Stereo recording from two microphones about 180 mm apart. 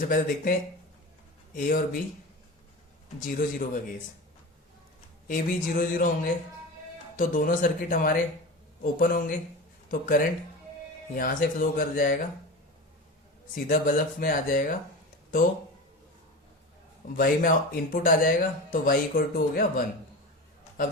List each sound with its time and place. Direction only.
0.0 s speech: 50° left (ahead or behind)
1.5 s speech: 50° left (ahead or behind)
3.2 s speech: 50° left (ahead or behind)
5.3 s speech: 50° left (ahead or behind)
13.7 s speech: 50° left (ahead or behind)
17.2 s speech: 50° left (ahead or behind)